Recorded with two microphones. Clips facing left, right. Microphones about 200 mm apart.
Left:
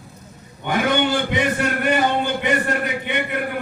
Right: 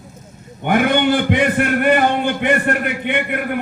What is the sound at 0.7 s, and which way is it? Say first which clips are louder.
A man's voice: right 4 dB; 55° right (ahead or behind).